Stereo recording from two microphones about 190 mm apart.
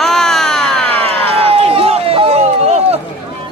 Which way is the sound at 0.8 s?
30° right (ahead or behind).